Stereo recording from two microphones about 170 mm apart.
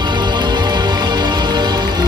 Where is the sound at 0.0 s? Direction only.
25° right (ahead or behind).